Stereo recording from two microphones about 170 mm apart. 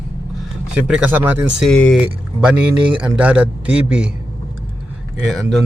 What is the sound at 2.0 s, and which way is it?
A man's voice, 5° right (ahead or behind).